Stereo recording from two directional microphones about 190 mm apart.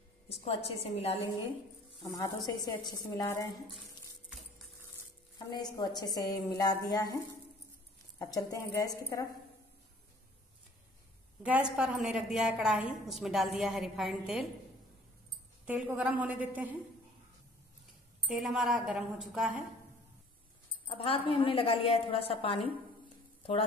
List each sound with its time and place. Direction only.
0.3 s a woman's voice: 30° left (ahead or behind)
2.0 s a woman's voice: 20° left (ahead or behind)
3.8 s a sound: centre (ahead or behind)
5.5 s a woman's voice: 20° left (ahead or behind)
8.2 s a woman's voice: 20° left (ahead or behind)
11.4 s a woman's voice: 5° right (ahead or behind)
15.6 s a woman's voice: 5° right (ahead or behind)
18.3 s a woman's voice: centre (ahead or behind)
20.8 s a woman's voice: 30° left (ahead or behind)